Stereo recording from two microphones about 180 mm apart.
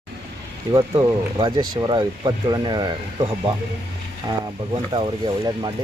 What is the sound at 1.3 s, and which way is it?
Speech, 25° right (ahead or behind).